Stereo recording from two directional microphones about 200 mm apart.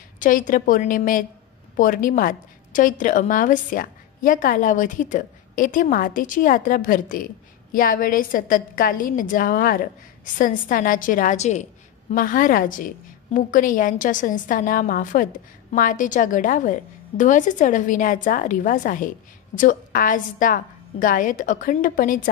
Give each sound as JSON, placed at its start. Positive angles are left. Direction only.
{"t": 0.2, "sound": "a woman's voice", "side_deg": 40}